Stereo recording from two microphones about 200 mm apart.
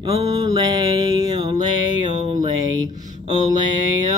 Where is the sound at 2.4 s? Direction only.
20° right (ahead or behind).